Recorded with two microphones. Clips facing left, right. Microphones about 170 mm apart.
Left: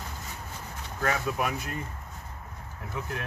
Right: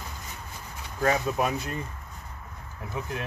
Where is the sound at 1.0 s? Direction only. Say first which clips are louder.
Right 4 dB; 25° right (ahead or behind).